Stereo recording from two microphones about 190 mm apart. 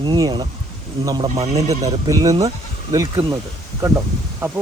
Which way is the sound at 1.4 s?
35° right (ahead or behind).